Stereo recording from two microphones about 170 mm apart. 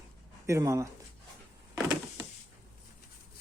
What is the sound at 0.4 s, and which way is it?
Speech, 15° right (ahead or behind).